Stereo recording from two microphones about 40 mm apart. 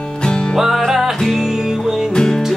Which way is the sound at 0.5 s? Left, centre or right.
Centre.